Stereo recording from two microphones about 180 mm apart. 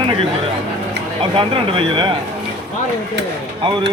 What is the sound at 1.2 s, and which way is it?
Speech, 30° right (ahead or behind).